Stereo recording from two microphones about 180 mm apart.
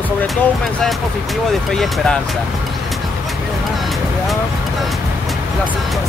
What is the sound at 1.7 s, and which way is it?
Speech, 5° left (ahead or behind).